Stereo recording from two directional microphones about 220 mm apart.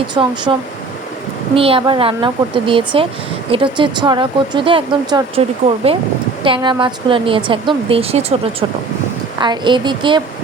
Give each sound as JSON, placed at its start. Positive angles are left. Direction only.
{"t": 0.1, "sound": "speech", "side_deg": -20}
{"t": 1.5, "sound": "speech", "side_deg": -25}
{"t": 9.4, "sound": "speech", "side_deg": -20}